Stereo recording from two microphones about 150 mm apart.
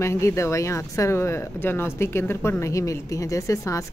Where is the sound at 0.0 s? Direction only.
20° left (ahead or behind).